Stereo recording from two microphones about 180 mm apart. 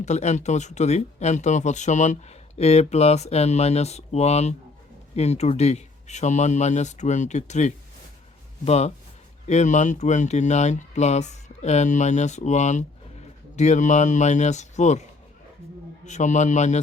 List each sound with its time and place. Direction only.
0.0 s speech: 40° left (ahead or behind)
16.0 s speech: 40° left (ahead or behind)